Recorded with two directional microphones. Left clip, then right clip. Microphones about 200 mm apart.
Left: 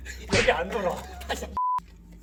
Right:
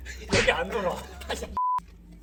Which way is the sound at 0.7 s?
25° right (ahead or behind).